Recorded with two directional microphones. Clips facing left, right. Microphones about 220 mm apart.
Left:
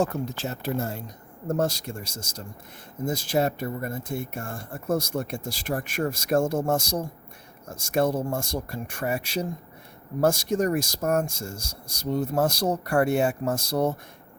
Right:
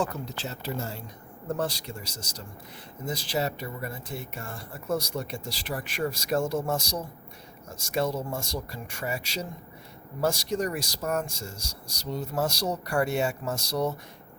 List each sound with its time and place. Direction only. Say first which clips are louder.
0.0 s speech: left 5 dB; 50° left (ahead or behind)